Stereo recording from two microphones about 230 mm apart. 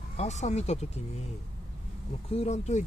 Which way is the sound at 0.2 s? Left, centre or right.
Left.